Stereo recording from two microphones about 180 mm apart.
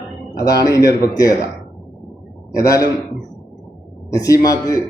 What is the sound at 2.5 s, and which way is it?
Speech, 20° left (ahead or behind).